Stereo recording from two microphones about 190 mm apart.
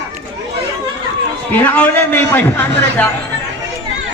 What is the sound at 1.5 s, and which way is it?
A man's voice, 10° left (ahead or behind).